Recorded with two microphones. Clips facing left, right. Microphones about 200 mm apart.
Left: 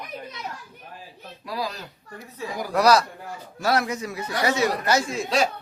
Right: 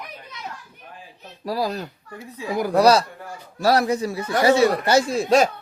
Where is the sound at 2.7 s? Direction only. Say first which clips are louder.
Right 2 dB; 30° right (ahead or behind); by 5.5 s 45° right (ahead or behind).